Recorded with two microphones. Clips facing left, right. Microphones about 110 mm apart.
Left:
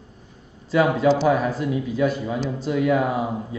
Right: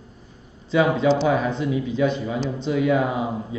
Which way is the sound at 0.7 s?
5° left (ahead or behind).